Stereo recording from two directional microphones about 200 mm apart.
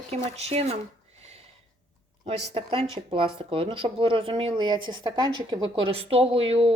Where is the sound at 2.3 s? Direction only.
25° right (ahead or behind).